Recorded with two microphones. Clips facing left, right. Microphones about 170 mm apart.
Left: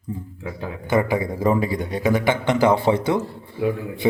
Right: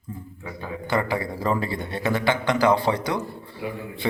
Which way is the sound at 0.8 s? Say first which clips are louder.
Left 5 dB; 20° left (ahead or behind).